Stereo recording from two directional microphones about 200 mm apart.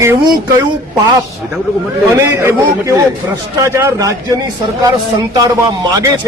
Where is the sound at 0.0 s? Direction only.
15° right (ahead or behind).